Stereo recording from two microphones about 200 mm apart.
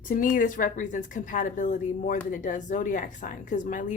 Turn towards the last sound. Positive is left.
turn(degrees=40)  # may be behind; listen again after turning